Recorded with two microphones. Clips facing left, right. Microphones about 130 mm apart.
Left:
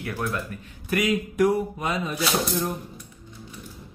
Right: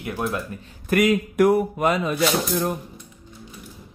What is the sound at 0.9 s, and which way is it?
Speech, 55° right (ahead or behind).